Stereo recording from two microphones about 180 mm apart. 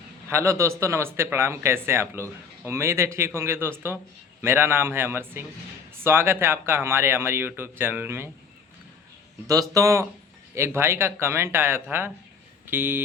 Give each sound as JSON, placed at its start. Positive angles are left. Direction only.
{"t": 0.3, "sound": "a man's voice", "side_deg": -15}
{"t": 9.5, "sound": "a man's voice", "side_deg": -20}